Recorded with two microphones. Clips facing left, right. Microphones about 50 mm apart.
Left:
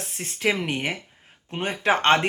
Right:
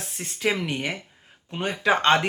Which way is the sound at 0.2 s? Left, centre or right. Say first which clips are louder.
Left 1 dB; left.